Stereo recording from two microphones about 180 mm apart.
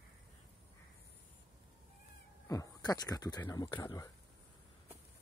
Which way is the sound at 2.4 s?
20° left (ahead or behind).